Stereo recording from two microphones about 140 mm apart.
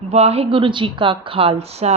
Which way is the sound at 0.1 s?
45° right (ahead or behind).